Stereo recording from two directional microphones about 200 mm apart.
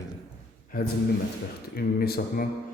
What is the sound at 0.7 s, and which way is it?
Speech, 45° left (ahead or behind).